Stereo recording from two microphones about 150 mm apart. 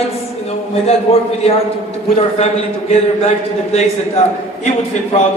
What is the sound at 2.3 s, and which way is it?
Speech, 45° left (ahead or behind).